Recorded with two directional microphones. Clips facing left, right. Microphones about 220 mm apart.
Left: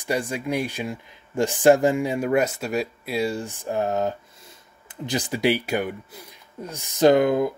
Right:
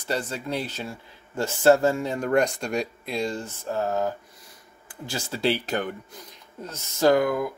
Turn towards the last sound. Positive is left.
turn(degrees=25)  # may be behind; listen again after turning